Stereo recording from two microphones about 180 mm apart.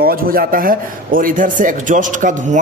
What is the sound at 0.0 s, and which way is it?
Speech, 55° right (ahead or behind).